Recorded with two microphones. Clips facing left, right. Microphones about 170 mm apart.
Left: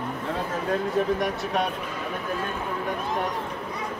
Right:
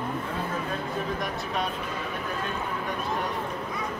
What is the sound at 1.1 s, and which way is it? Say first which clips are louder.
Speech: left 4 dB; 70° left (ahead or behind).